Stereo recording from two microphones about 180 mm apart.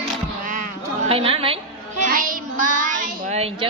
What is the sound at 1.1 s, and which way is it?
Child singing, 30° right (ahead or behind).